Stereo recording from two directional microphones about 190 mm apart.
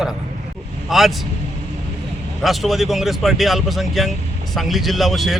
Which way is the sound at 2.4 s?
Centre (ahead or behind).